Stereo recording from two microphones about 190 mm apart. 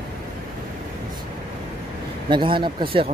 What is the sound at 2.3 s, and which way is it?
Speech, 25° right (ahead or behind).